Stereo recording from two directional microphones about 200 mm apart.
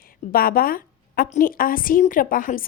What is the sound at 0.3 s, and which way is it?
A woman's voice, 45° left (ahead or behind).